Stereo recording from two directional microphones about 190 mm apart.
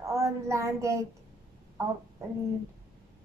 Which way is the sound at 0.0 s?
15° right (ahead or behind).